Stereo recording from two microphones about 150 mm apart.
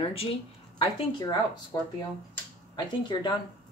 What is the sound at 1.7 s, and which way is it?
Speech, 25° left (ahead or behind).